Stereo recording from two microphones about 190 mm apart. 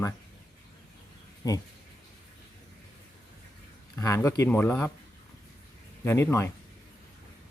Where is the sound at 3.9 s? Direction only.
15° left (ahead or behind).